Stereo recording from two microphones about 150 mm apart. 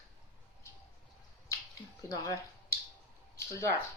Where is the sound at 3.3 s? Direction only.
20° left (ahead or behind).